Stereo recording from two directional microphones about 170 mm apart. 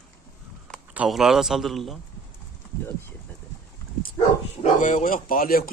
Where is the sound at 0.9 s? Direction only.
Centre (ahead or behind).